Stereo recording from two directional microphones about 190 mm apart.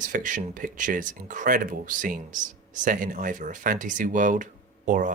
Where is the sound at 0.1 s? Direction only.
45° right (ahead or behind).